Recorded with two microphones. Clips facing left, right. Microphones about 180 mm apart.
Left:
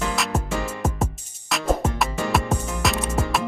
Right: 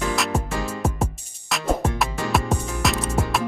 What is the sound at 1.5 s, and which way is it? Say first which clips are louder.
Music: even; centre (ahead or behind).